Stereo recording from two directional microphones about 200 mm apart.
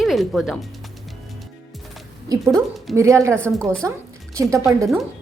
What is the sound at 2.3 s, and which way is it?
A woman's voice, 15° right (ahead or behind).